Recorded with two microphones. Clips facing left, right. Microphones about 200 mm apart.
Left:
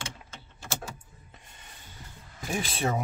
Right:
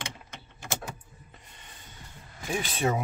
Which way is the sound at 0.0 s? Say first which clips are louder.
Right 1 dB; 15° right (ahead or behind).